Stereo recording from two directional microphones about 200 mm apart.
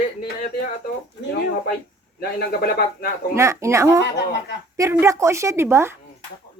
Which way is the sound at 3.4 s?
15° right (ahead or behind).